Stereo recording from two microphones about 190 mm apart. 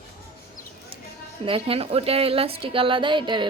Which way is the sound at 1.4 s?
30° right (ahead or behind).